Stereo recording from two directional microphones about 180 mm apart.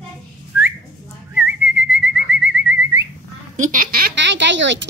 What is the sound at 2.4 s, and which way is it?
Bird, 10° right (ahead or behind).